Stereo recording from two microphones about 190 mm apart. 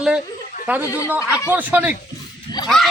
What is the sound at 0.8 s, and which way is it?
Speech, 15° left (ahead or behind).